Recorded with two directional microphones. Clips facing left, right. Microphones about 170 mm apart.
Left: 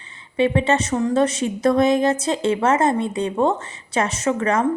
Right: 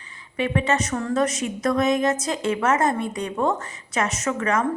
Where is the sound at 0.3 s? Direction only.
30° left (ahead or behind).